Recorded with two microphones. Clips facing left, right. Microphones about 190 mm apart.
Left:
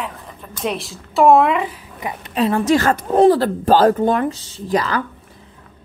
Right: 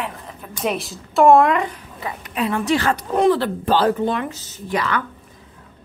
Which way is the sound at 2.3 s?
35° left (ahead or behind).